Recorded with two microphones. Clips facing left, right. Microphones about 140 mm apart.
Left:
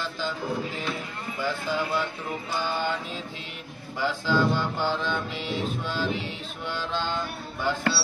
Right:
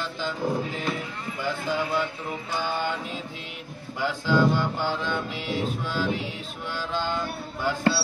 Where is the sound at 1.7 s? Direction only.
10° right (ahead or behind).